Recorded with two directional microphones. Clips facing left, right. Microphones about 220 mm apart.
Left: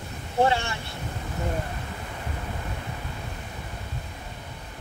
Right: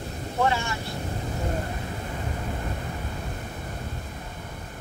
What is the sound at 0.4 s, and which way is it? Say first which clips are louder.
Vehicle: left 3 dB; 30° left (ahead or behind).